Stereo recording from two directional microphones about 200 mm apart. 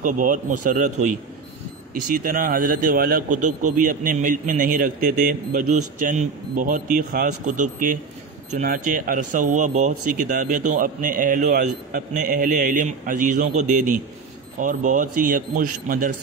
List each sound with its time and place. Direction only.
0.0 s a man's voice: 40° right (ahead or behind)